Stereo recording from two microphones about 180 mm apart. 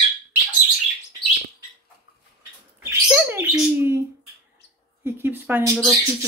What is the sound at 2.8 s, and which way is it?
Bird, 15° right (ahead or behind).